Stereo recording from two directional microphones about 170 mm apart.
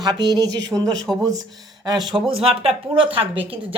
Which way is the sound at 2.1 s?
35° right (ahead or behind).